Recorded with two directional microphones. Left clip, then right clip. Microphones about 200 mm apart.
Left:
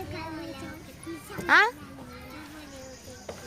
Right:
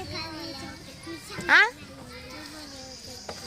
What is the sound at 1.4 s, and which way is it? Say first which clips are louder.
Speech: right 1 dB; 5° left (ahead or behind).